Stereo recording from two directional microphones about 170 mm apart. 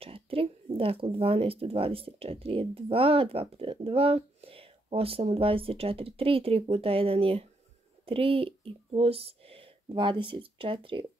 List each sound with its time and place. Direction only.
0.0 s speech: 35° right (ahead or behind)